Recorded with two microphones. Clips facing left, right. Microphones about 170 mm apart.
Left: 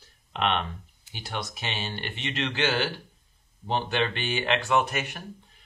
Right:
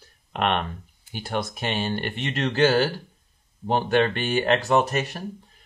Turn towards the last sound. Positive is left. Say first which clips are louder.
# right 4 dB
turn(degrees=-35)  # may be behind; listen again after turning